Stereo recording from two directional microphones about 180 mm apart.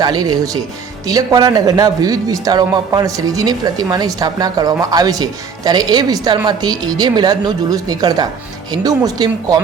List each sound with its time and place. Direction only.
0.0 s a man's voice: 20° right (ahead or behind)